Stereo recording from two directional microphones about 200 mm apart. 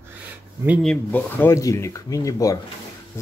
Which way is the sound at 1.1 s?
10° left (ahead or behind).